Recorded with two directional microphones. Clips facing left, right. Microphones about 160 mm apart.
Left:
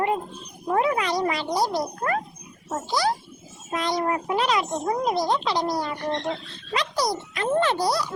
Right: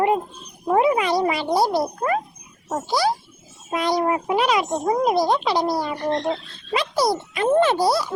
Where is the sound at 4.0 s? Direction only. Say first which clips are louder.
Right 3 dB; 20° right (ahead or behind).